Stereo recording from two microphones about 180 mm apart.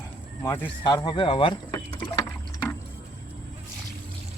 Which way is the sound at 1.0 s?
30° left (ahead or behind).